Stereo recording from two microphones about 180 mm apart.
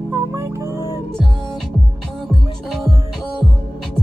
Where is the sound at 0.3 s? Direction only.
15° right (ahead or behind).